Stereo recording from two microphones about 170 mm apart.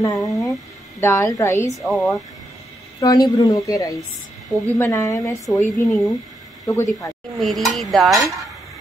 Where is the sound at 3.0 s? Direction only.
20° left (ahead or behind).